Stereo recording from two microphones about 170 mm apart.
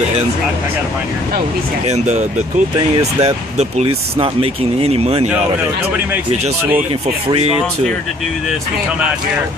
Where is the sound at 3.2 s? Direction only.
40° right (ahead or behind).